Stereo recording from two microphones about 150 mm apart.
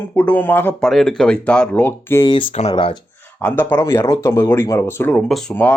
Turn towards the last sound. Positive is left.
turn(degrees=15)  # may be behind; listen again after turning